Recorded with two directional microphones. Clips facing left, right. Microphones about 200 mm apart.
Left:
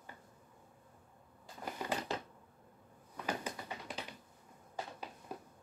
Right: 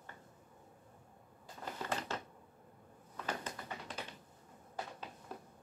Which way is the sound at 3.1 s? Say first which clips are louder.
Left 2 dB; 10° left (ahead or behind).